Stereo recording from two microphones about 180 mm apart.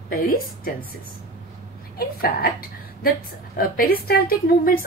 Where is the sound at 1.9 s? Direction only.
55° left (ahead or behind).